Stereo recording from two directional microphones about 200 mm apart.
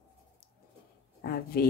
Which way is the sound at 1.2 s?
45° left (ahead or behind).